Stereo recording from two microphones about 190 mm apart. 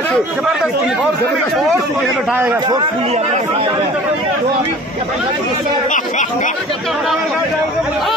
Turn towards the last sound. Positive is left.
turn(degrees=0)  # may be behind; listen again after turning